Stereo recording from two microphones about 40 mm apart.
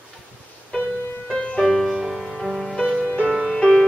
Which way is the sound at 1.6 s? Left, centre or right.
Centre.